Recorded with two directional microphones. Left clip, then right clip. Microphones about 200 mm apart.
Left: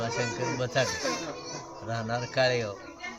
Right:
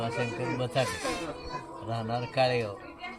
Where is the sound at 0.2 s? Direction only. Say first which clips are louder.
Left 1 dB; 15° left (ahead or behind).